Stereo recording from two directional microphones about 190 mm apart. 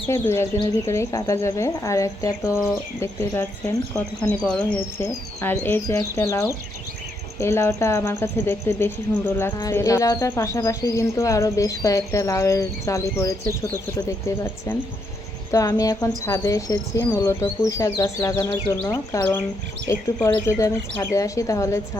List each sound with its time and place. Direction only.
0.1 s speech: 15° left (ahead or behind)